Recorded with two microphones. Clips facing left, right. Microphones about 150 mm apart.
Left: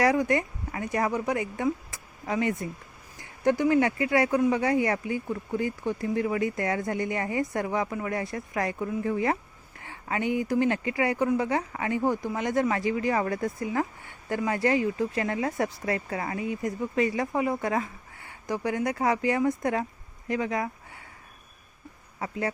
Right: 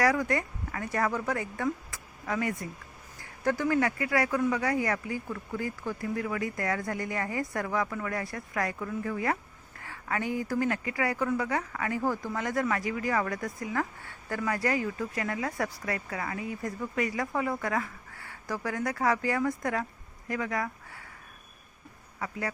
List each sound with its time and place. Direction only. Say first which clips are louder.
0.0 s speech: left 3 dB; 20° left (ahead or behind)
22.2 s speech: left 4 dB; 25° left (ahead or behind)